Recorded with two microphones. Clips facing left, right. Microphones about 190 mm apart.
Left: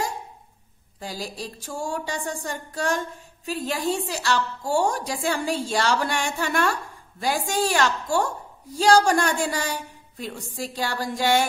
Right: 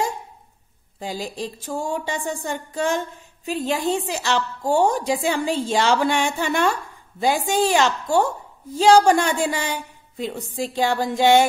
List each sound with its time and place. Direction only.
0.9 s a woman's voice: 25° right (ahead or behind)